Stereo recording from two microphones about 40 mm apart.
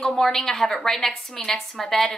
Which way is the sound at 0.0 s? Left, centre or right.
Centre.